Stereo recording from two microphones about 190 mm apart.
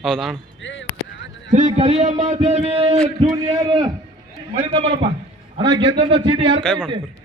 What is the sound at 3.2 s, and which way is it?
A man's voice, 20° right (ahead or behind).